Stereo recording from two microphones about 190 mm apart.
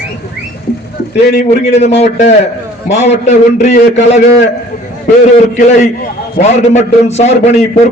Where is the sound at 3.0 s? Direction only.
35° left (ahead or behind).